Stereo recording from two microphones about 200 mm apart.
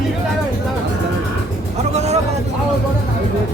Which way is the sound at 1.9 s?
35° right (ahead or behind).